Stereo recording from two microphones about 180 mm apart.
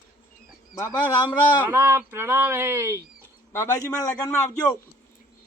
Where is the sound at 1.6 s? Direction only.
15° right (ahead or behind).